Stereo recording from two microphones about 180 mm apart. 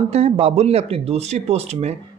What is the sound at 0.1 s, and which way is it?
Speech, 35° right (ahead or behind).